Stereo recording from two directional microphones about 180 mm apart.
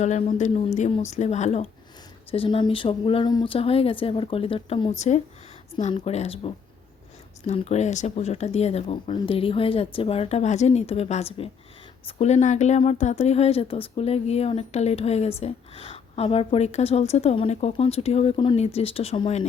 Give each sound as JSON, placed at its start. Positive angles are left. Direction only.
{"t": 0.0, "sound": "speech", "side_deg": 40}
{"t": 0.8, "sound": "speech", "side_deg": 30}